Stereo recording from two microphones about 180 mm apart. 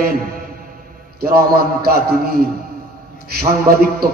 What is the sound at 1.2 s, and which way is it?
A man's voice, 60° right (ahead or behind).